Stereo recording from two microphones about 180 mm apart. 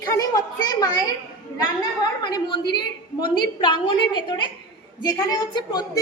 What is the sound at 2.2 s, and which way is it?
A woman's voice, 25° left (ahead or behind).